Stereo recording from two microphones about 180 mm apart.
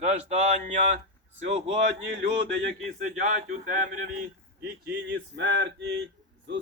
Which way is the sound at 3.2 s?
45° right (ahead or behind).